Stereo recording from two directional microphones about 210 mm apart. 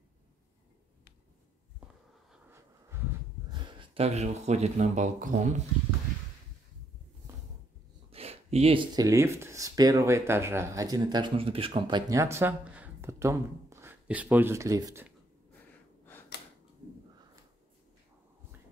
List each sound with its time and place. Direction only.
3.5 s speech: 25° right (ahead or behind)
8.1 s speech: 30° right (ahead or behind)
16.3 s a sound: 55° left (ahead or behind)